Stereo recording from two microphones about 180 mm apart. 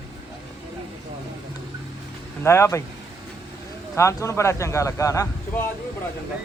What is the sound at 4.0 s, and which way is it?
A man's voice, 15° left (ahead or behind).